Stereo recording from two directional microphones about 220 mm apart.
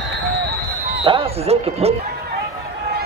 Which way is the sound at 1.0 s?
25° right (ahead or behind).